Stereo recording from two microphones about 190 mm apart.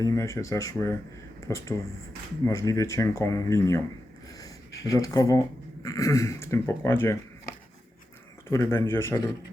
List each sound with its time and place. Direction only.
0.0 s speech: 15° left (ahead or behind)
4.4 s a sound: 20° left (ahead or behind)
5.8 s speech: 15° left (ahead or behind)
8.4 s speech: 15° left (ahead or behind)